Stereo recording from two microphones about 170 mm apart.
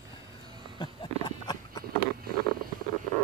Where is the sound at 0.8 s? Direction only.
25° left (ahead or behind).